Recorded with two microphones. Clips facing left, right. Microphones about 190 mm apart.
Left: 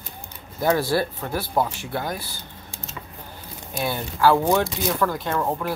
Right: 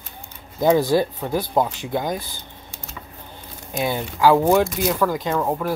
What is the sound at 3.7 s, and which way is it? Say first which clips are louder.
Speech: right 3 dB; 15° right (ahead or behind).